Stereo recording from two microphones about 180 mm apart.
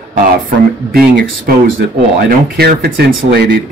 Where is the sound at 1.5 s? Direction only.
60° right (ahead or behind).